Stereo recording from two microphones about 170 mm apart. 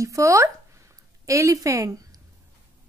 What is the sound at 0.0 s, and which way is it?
A woman's voice, 20° right (ahead or behind).